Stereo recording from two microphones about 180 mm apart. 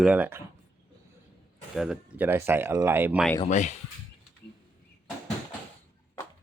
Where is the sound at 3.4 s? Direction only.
40° left (ahead or behind).